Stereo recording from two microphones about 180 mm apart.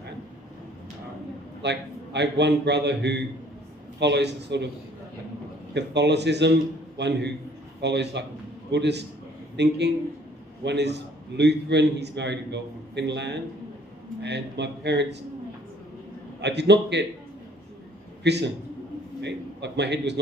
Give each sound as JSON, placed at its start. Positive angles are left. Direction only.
{"t": 1.6, "sound": "a man's voice", "side_deg": -75}
{"t": 5.8, "sound": "a man's voice", "side_deg": -70}
{"t": 16.3, "sound": "a man's voice", "side_deg": -70}
{"t": 18.2, "sound": "a man's voice", "side_deg": -70}